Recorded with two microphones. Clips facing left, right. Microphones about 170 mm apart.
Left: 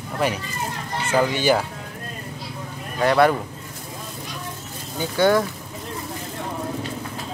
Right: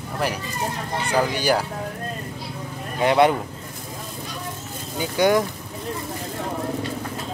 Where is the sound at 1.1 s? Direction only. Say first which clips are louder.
Left 2 dB; 10° right (ahead or behind).